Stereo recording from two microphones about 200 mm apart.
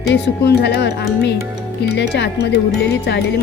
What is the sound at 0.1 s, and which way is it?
Speech, 55° left (ahead or behind).